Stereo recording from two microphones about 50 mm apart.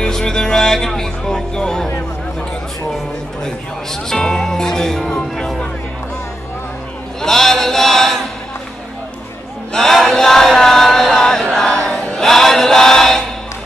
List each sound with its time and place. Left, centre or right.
0.0 s music: centre
3.4 s music: centre
7.2 s chant: centre
9.7 s chant: centre
12.2 s chant: centre